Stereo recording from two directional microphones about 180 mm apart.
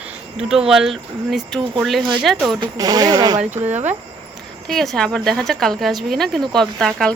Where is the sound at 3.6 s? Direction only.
40° right (ahead or behind).